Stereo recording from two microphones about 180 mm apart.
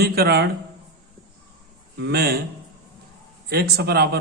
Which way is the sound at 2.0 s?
60° right (ahead or behind).